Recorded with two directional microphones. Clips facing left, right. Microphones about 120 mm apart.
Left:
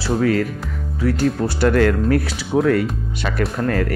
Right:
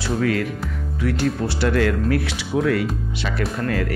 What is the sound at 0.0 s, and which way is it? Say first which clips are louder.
Speech: left 3 dB; 35° left (ahead or behind).